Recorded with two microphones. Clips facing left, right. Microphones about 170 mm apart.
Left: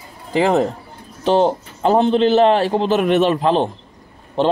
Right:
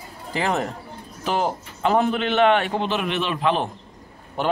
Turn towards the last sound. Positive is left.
turn(degrees=30)  # may be behind; listen again after turning